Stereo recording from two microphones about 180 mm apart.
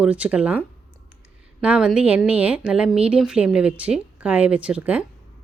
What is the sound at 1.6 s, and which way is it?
Speech, 5° right (ahead or behind).